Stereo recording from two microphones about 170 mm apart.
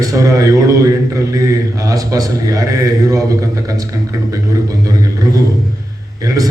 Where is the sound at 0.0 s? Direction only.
20° right (ahead or behind).